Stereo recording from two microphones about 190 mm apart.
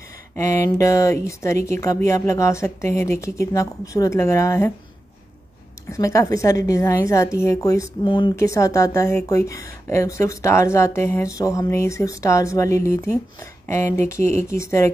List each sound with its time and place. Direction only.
0.4 s speech: 15° left (ahead or behind)
5.9 s speech: 15° left (ahead or behind)